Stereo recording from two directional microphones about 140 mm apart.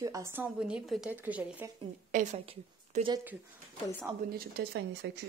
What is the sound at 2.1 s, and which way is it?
Speech, 65° right (ahead or behind).